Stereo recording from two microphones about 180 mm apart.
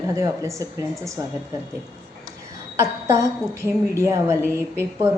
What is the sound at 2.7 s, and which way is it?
A woman's voice, 15° right (ahead or behind).